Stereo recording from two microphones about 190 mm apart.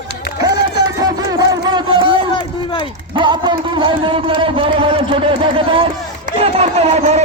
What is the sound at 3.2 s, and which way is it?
A man's voice, 25° right (ahead or behind).